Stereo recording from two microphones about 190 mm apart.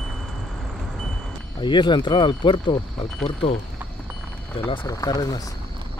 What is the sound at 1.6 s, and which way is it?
Speech, 25° left (ahead or behind).